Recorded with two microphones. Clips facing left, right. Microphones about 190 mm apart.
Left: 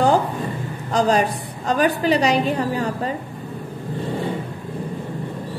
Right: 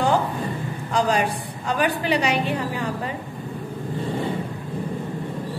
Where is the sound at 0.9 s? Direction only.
40° left (ahead or behind).